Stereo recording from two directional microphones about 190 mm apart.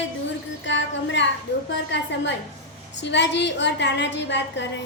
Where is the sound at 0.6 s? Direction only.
70° left (ahead or behind).